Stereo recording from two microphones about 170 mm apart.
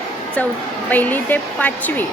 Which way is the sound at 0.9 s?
10° left (ahead or behind).